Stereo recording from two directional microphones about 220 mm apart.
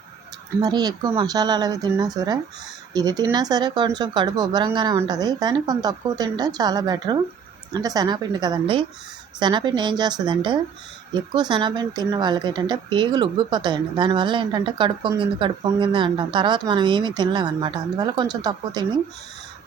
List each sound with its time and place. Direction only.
0.6 s speech: 20° right (ahead or behind)